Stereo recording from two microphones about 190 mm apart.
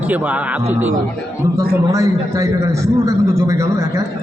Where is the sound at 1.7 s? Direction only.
15° right (ahead or behind).